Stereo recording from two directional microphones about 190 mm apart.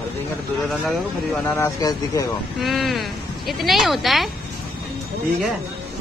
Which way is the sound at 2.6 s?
Centre (ahead or behind).